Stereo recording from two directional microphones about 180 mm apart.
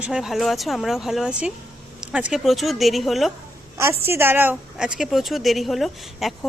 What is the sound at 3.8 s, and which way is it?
A woman's voice, 15° right (ahead or behind).